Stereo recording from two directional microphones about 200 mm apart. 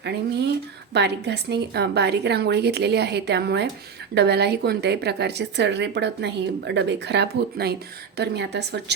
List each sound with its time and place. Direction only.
0.0 s a woman's voice: 55° right (ahead or behind)